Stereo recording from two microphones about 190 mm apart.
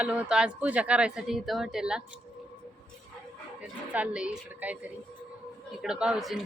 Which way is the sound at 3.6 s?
5° right (ahead or behind).